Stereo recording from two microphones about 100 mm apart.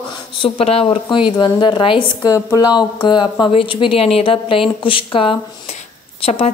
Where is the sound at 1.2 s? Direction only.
55° left (ahead or behind).